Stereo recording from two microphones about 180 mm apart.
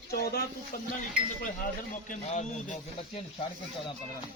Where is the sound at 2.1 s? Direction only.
45° left (ahead or behind).